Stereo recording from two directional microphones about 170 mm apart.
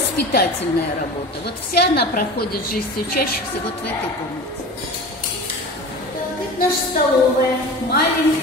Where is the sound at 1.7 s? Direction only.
70° left (ahead or behind).